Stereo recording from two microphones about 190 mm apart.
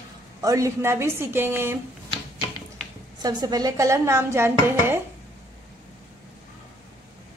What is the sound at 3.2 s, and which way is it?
Speech, 20° right (ahead or behind).